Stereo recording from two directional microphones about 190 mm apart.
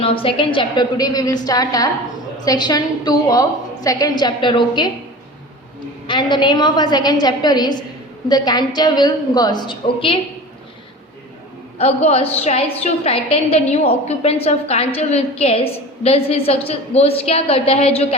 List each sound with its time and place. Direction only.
0.0 s a woman's voice: 30° left (ahead or behind)
6.1 s a woman's voice: 25° left (ahead or behind)
11.8 s a woman's voice: 30° left (ahead or behind)